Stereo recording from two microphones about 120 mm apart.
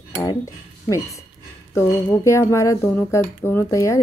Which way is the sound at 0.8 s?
25° left (ahead or behind).